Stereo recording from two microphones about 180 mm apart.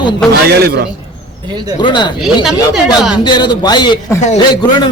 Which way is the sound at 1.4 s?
25° right (ahead or behind).